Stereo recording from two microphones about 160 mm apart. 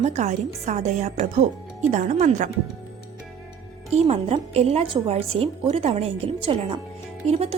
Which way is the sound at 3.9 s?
40° right (ahead or behind).